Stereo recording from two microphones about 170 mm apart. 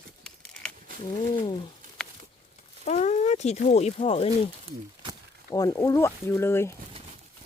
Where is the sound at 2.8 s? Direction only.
40° left (ahead or behind).